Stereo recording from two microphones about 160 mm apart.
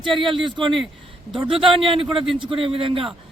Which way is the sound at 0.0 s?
30° right (ahead or behind).